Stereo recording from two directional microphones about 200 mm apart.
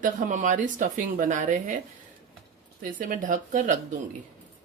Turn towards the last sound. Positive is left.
turn(degrees=-40)  # may be behind; listen again after turning